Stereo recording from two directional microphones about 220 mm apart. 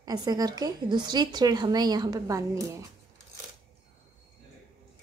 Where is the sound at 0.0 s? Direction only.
15° right (ahead or behind).